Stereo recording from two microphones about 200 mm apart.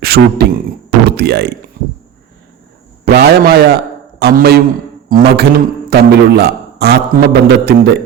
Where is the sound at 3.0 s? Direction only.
50° right (ahead or behind).